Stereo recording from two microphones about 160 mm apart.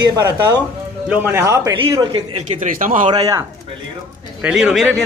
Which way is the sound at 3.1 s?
20° right (ahead or behind).